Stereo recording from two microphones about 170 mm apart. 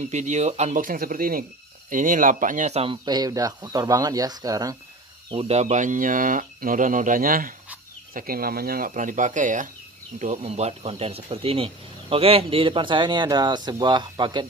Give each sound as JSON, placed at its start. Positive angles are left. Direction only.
{"t": 0.1, "sound": "speech", "side_deg": -45}
{"t": 5.3, "sound": "speech", "side_deg": -35}